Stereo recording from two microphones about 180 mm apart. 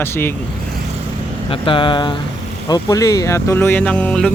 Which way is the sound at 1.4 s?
30° left (ahead or behind).